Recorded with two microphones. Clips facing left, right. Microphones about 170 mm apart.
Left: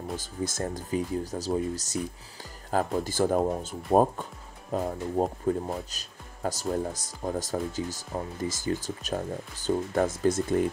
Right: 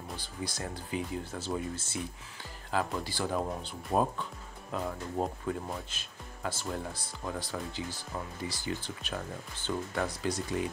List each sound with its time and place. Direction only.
0.1 s speech: 45° left (ahead or behind)